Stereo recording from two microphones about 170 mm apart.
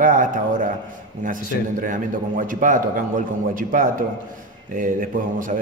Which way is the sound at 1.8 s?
50° right (ahead or behind).